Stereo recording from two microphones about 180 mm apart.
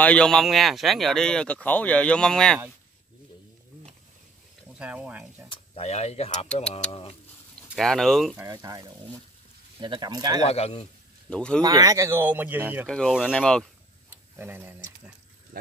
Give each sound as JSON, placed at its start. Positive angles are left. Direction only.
{"t": 0.0, "sound": "speech", "side_deg": 5}
{"t": 4.7, "sound": "speech", "side_deg": -5}
{"t": 5.5, "sound": "a man's voice", "side_deg": 35}
{"t": 7.7, "sound": "speech", "side_deg": 0}
{"t": 8.4, "sound": "speech", "side_deg": -20}
{"t": 10.4, "sound": "a man's voice", "side_deg": 35}
{"t": 11.2, "sound": "speech", "side_deg": 5}
{"t": 11.6, "sound": "speech", "side_deg": -20}
{"t": 12.8, "sound": "speech", "side_deg": 5}
{"t": 14.1, "sound": "speech", "side_deg": -10}